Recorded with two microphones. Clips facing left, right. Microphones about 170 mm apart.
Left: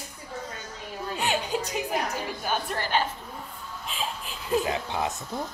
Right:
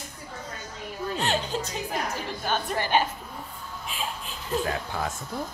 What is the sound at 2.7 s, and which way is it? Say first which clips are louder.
Speech: right 5 dB; 15° right (ahead or behind).